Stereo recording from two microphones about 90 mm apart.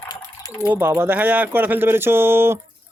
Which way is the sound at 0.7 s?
25° right (ahead or behind).